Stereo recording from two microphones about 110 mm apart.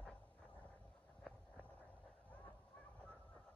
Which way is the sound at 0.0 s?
10° left (ahead or behind).